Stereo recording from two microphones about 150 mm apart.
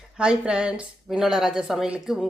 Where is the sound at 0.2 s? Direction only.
5° right (ahead or behind).